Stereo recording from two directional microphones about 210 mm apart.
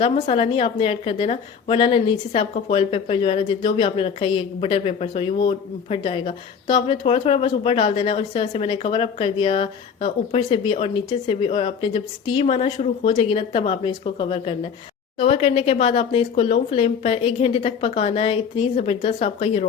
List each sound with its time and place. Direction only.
0.0 s a woman's voice: 30° left (ahead or behind)